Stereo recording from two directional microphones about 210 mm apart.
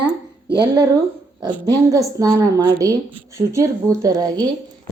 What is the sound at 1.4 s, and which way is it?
Speech, 15° right (ahead or behind).